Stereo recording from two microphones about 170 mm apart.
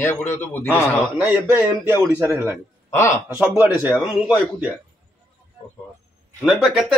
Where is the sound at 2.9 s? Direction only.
20° left (ahead or behind).